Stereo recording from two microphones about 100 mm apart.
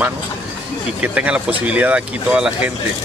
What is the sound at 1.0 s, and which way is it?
Speech, 10° right (ahead or behind).